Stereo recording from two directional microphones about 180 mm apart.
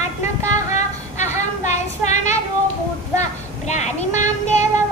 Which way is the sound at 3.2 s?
40° left (ahead or behind).